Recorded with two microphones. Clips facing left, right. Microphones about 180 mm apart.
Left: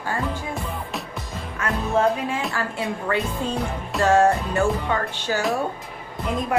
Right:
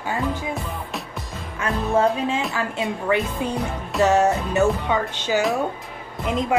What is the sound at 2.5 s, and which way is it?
Speech, 20° right (ahead or behind).